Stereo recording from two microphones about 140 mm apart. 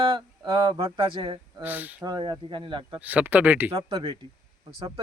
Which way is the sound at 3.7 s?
40° right (ahead or behind).